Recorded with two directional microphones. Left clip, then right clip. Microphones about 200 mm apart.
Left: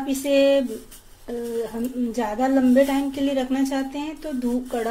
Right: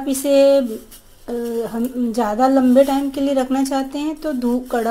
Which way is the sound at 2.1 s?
25° right (ahead or behind).